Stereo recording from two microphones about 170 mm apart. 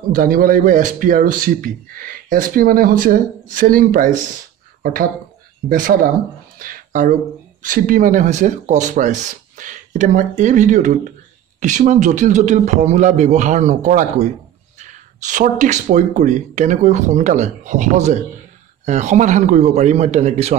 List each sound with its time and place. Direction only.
0.1 s speech: 55° right (ahead or behind)
5.7 s speech: 55° right (ahead or behind); by 20.5 s 40° right (ahead or behind)